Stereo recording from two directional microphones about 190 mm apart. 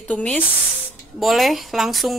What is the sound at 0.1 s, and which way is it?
A woman's voice, 5° left (ahead or behind).